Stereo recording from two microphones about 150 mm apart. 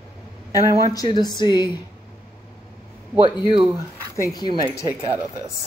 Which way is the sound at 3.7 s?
20° right (ahead or behind).